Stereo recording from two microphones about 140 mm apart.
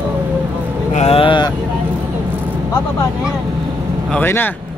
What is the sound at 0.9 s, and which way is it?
Speech, 50° left (ahead or behind).